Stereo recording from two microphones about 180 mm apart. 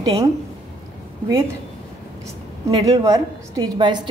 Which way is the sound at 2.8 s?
20° right (ahead or behind).